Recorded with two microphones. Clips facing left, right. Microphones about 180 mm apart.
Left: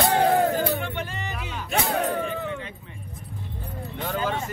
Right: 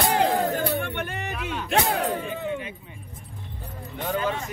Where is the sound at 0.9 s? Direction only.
60° right (ahead or behind).